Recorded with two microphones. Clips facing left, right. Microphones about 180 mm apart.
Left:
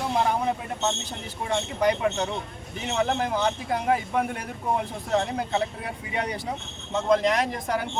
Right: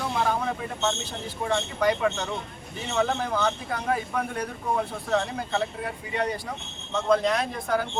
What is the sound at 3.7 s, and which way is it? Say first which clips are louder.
Speech: left 3 dB; 20° left (ahead or behind).